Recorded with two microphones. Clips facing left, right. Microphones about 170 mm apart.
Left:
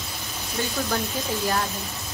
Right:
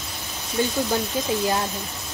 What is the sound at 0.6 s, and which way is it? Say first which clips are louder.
Speech: right 6 dB; 15° right (ahead or behind).